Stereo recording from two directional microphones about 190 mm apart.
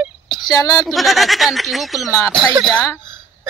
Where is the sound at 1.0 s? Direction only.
Centre (ahead or behind).